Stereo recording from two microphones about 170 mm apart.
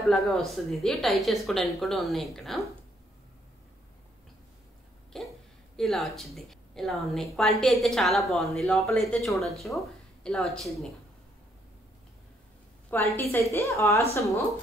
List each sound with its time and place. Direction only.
0.0 s a woman's voice: centre (ahead or behind)
5.1 s a sound: centre (ahead or behind)
5.8 s a woman's voice: centre (ahead or behind)
12.9 s a woman's voice: 15° left (ahead or behind)